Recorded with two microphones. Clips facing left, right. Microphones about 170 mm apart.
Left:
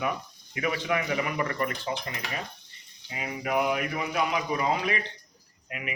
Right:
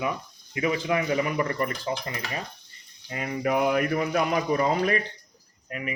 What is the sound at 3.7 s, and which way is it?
A man's voice, 50° right (ahead or behind).